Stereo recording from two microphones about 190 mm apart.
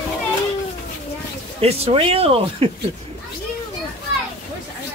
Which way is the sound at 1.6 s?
30° right (ahead or behind).